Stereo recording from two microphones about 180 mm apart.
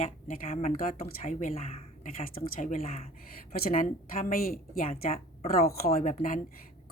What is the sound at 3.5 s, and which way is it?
A woman's voice, 55° left (ahead or behind).